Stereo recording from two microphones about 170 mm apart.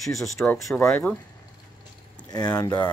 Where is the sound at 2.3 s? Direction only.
25° left (ahead or behind).